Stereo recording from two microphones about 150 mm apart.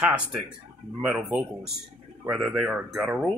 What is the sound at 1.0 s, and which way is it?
Speech, 5° right (ahead or behind).